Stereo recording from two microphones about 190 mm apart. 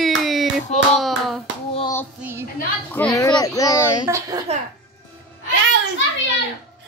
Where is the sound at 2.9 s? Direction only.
10° left (ahead or behind).